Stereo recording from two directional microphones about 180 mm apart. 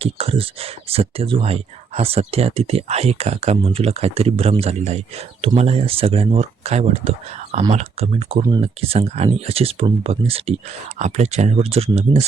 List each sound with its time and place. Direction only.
0.0 s speech: 35° right (ahead or behind)